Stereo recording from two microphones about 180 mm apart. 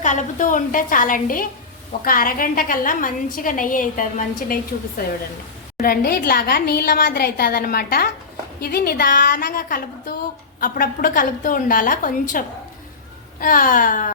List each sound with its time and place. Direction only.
0.0 s a woman's voice: 45° left (ahead or behind)
5.8 s a woman's voice: 55° left (ahead or behind)